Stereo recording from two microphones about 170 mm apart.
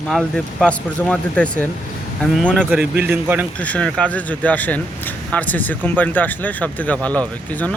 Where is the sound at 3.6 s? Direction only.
5° left (ahead or behind).